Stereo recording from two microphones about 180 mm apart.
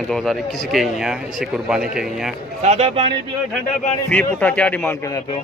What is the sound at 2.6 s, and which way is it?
Speech, 35° right (ahead or behind).